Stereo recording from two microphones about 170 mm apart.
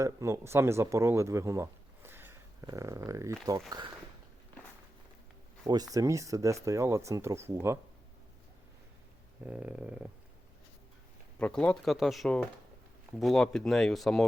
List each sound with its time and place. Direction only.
0.0 s speech: 15° right (ahead or behind)
5.6 s speech: 20° right (ahead or behind)
9.4 s a sound: 10° right (ahead or behind)
11.3 s speech: 5° left (ahead or behind)